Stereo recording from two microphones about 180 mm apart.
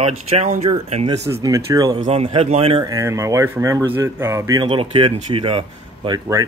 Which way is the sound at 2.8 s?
15° right (ahead or behind).